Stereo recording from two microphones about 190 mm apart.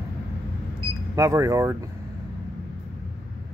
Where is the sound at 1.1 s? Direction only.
15° right (ahead or behind).